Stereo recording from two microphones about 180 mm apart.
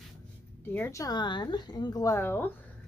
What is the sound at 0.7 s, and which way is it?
Speech, 15° left (ahead or behind).